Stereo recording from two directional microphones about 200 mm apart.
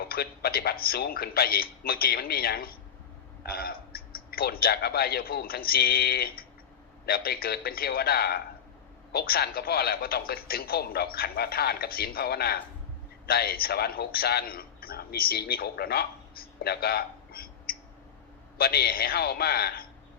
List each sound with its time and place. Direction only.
0.1 s a man's voice: 50° left (ahead or behind)